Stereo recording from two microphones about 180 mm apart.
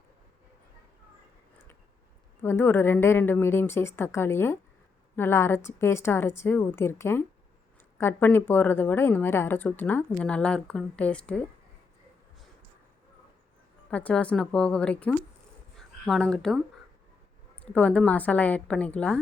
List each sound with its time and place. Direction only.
2.4 s speech: 15° left (ahead or behind)
13.9 s speech: 5° left (ahead or behind)